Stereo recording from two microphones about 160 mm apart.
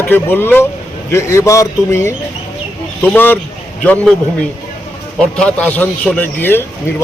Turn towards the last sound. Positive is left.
turn(degrees=15)  # may be behind; listen again after turning